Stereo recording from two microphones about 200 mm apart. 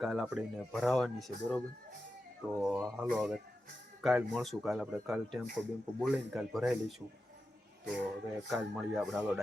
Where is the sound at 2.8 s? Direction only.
5° right (ahead or behind).